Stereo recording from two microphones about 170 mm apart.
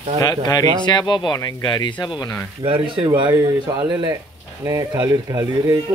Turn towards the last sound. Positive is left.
turn(degrees=-20)  # may be behind; listen again after turning